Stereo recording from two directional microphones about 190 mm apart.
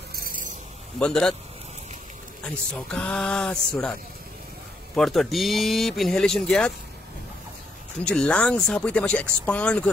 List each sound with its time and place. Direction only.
0.1 s snake: 50° right (ahead or behind)
0.9 s speech: 5° left (ahead or behind)
2.4 s speech: 5° left (ahead or behind)
4.9 s speech: centre (ahead or behind)
8.0 s speech: 5° left (ahead or behind)